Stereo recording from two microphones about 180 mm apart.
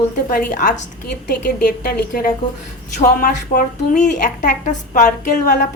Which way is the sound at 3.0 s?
50° left (ahead or behind).